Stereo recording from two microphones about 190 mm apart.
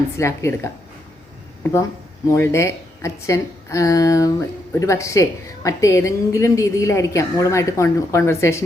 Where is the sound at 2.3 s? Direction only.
15° left (ahead or behind).